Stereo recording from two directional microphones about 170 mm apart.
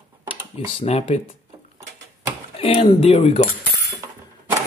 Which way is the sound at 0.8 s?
35° left (ahead or behind).